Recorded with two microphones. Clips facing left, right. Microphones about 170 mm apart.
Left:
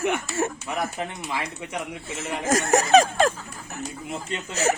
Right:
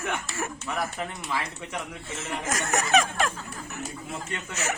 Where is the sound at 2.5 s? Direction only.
35° left (ahead or behind).